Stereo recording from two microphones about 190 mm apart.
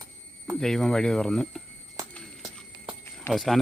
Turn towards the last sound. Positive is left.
turn(degrees=0)  # may be behind; listen again after turning